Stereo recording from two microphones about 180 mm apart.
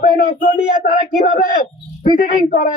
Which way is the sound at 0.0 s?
50° left (ahead or behind).